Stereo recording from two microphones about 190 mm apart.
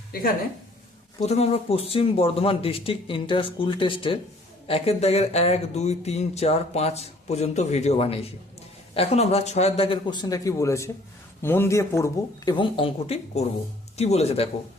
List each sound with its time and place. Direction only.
1.2 s speech: 35° left (ahead or behind)